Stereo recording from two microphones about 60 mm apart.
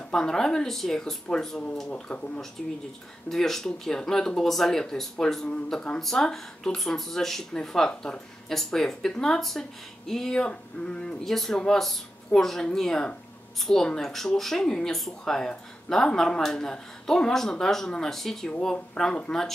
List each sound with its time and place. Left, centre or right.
0.1 s speech: centre
1.9 s speech: centre
3.3 s speech: centre
11.2 s speech: centre